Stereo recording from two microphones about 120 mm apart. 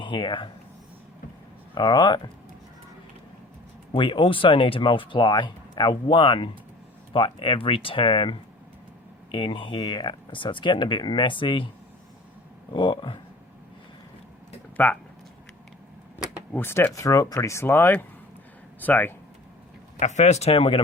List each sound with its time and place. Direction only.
0.0 s speech: 40° left (ahead or behind)
1.7 s speech: 40° left (ahead or behind)
3.9 s speech: 45° left (ahead or behind)
12.7 s speech: 40° left (ahead or behind)
14.8 s speech: 15° left (ahead or behind)
16.5 s speech: 20° left (ahead or behind)
20.0 s speech: 75° left (ahead or behind); by 20.8 s 50° left (ahead or behind)